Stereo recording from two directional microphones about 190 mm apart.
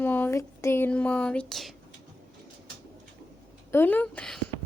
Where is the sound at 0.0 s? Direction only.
10° left (ahead or behind).